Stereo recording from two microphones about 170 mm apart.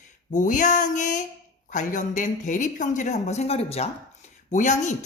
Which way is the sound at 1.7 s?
45° left (ahead or behind).